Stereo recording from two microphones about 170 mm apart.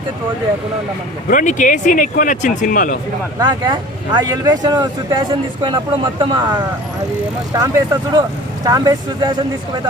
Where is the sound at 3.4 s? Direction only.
25° right (ahead or behind).